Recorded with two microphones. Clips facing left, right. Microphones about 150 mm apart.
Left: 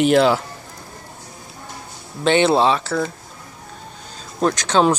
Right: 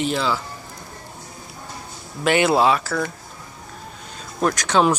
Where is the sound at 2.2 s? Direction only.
25° left (ahead or behind).